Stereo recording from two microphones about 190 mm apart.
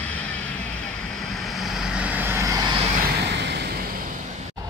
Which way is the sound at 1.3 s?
Centre (ahead or behind).